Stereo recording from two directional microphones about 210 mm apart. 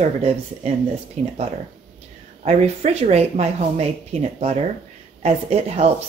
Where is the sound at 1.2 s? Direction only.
30° right (ahead or behind).